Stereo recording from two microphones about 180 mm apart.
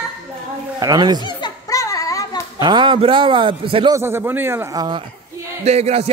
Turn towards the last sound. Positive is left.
turn(degrees=-35)  # may be behind; listen again after turning